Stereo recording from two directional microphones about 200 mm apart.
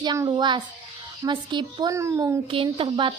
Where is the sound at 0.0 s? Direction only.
20° right (ahead or behind).